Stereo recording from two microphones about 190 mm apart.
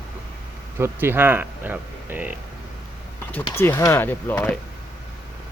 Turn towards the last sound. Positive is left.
turn(degrees=10)  # may be behind; listen again after turning